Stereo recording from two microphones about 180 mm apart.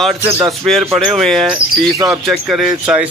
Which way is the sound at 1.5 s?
20° right (ahead or behind).